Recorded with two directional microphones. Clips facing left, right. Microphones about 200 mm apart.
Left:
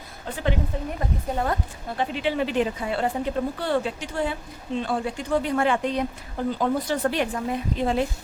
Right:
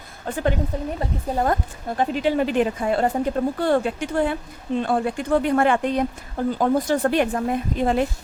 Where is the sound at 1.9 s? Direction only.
45° right (ahead or behind).